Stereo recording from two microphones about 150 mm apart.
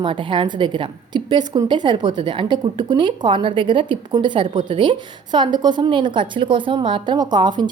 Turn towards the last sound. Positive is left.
turn(degrees=-30)  # may be behind; listen again after turning